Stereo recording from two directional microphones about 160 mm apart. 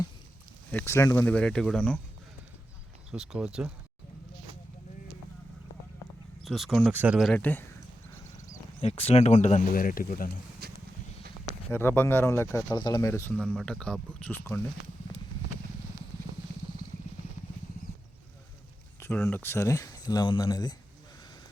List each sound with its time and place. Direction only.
0.7 s speech: 15° left (ahead or behind)
3.1 s speech: 5° right (ahead or behind)
6.4 s speech: centre (ahead or behind)
6.9 s speech: 10° right (ahead or behind)
7.2 s speech: 5° left (ahead or behind)
8.8 s speech: 40° left (ahead or behind); by 10.3 s 65° left (ahead or behind)
10.6 s a sound: 70° right (ahead or behind)
11.7 s speech: 15° left (ahead or behind)
13.4 s speech: centre (ahead or behind)
18.9 s speech: 15° left (ahead or behind)